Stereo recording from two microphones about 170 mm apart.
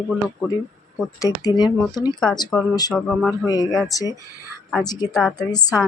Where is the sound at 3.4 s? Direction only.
25° left (ahead or behind).